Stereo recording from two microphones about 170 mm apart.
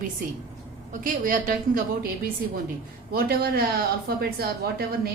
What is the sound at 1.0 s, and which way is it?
Speech, 55° right (ahead or behind).